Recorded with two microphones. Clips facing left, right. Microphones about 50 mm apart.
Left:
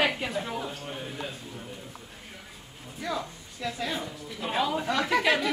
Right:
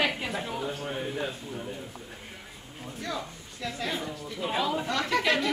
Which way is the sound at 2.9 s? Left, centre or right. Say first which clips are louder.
Left 3 dB; centre.